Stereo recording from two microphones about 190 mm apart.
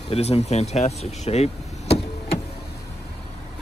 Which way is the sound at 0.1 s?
35° left (ahead or behind).